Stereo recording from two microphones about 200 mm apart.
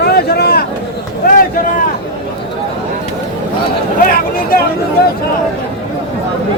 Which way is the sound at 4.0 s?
45° left (ahead or behind).